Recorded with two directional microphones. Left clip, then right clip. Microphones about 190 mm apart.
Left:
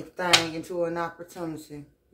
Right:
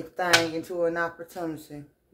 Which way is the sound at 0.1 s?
25° right (ahead or behind).